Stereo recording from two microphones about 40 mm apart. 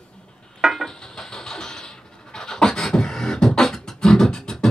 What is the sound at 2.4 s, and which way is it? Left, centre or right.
Beatboxing, centre.